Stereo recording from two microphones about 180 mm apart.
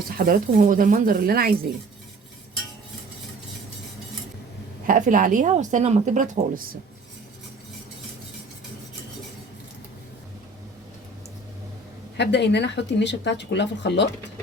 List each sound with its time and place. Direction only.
0.2 s speech: 50° right (ahead or behind)
4.9 s speech: 45° right (ahead or behind)
12.1 s speech: 70° left (ahead or behind)